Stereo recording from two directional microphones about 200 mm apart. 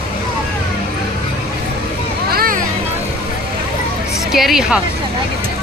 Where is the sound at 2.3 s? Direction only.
45° right (ahead or behind).